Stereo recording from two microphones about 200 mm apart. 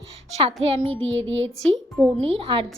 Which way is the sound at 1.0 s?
70° right (ahead or behind).